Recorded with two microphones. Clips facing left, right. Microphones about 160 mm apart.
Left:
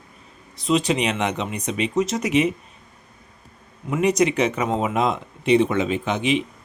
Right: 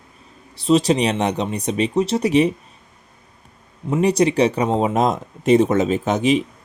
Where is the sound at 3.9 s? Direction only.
35° right (ahead or behind).